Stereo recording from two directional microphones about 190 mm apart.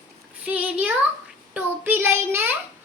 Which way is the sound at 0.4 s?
10° right (ahead or behind).